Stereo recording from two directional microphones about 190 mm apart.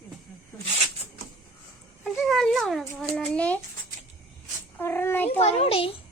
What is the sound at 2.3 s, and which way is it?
A child's voice, centre (ahead or behind).